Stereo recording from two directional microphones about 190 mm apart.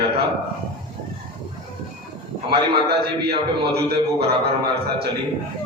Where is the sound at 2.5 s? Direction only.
60° right (ahead or behind).